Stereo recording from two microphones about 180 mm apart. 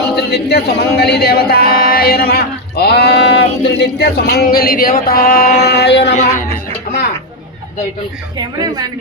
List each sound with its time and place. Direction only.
0.2 s speech: 65° left (ahead or behind)
8.4 s a woman's voice: 20° right (ahead or behind)